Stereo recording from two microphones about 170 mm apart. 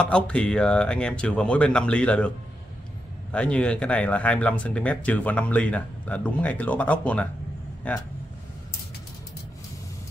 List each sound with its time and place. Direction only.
0.0 s speech: 5° left (ahead or behind)